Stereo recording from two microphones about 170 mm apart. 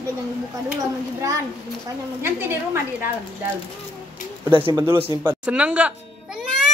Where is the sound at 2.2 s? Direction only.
15° right (ahead or behind).